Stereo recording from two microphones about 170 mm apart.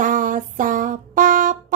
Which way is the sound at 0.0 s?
50° right (ahead or behind).